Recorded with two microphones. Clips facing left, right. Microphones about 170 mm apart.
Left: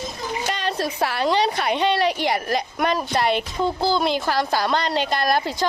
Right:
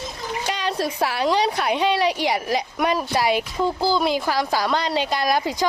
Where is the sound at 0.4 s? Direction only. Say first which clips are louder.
Right 1 dB; centre (ahead or behind).